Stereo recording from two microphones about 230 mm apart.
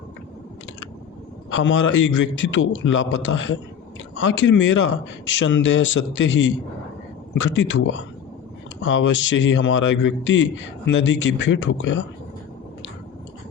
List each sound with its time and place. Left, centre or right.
1.5 s a man's voice: left